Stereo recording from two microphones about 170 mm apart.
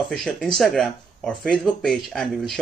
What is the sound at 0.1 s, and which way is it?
Speech, 5° left (ahead or behind).